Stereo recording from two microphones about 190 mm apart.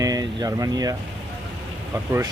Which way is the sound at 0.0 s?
20° right (ahead or behind).